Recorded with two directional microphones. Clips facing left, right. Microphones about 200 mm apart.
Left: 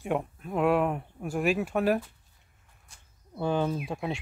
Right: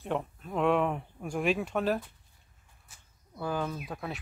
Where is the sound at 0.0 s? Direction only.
10° left (ahead or behind).